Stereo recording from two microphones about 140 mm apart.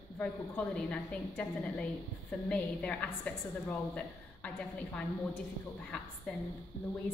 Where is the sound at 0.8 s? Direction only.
10° left (ahead or behind).